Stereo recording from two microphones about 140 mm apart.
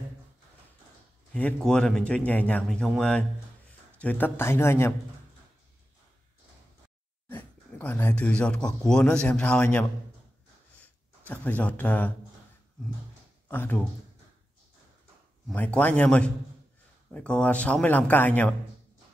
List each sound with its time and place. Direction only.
1.3 s a man's voice: 5° left (ahead or behind)
7.2 s speech: 10° left (ahead or behind)
11.2 s a man's voice: 10° left (ahead or behind)
13.5 s speech: 15° left (ahead or behind)
15.5 s a man's voice: 10° left (ahead or behind)